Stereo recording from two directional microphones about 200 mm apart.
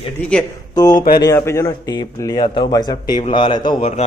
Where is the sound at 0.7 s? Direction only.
20° left (ahead or behind).